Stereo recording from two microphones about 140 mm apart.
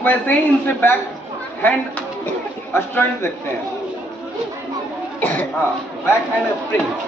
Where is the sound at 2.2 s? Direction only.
15° left (ahead or behind).